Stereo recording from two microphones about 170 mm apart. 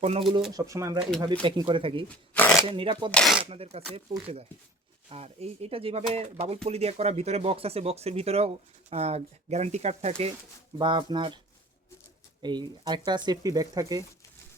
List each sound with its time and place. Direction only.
0.0 s speech: 35° right (ahead or behind)
0.5 s speech: 20° right (ahead or behind)
1.2 s speech: 30° right (ahead or behind)
3.1 s speech: 5° left (ahead or behind)
3.5 s speech: 35° right (ahead or behind)
5.0 s speech: 35° right (ahead or behind)
12.4 s speech: 25° right (ahead or behind)